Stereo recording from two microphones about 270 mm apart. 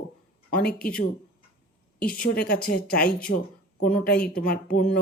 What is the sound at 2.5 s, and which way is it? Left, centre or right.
Speech, left.